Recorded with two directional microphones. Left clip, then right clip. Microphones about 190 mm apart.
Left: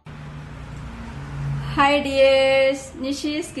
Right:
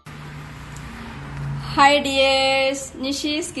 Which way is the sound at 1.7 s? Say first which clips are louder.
Right 2 dB; 30° right (ahead or behind).